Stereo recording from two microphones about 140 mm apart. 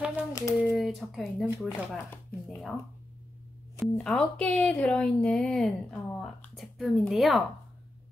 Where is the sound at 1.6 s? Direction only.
20° left (ahead or behind).